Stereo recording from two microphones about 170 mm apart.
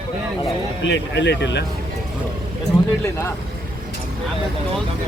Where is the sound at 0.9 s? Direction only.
90° left.